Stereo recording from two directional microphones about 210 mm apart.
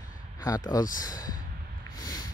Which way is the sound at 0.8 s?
40° left (ahead or behind).